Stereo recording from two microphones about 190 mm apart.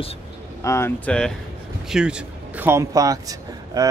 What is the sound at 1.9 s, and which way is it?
Speech, 5° right (ahead or behind).